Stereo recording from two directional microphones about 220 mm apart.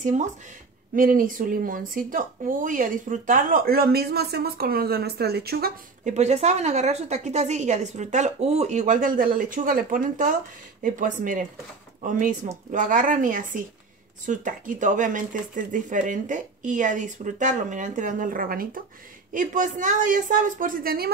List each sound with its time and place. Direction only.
0.0 s speech: 35° right (ahead or behind)
6.1 s speech: 30° right (ahead or behind)